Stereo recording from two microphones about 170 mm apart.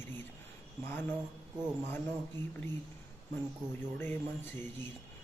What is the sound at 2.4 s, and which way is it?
Speech, 15° left (ahead or behind).